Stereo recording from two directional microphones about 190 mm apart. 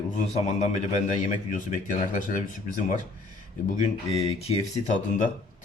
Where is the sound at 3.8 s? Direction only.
30° left (ahead or behind).